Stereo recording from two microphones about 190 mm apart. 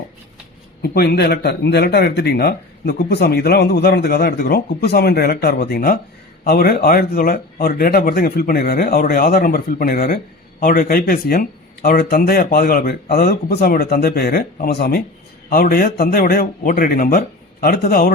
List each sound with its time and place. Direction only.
0.8 s speech: 55° left (ahead or behind)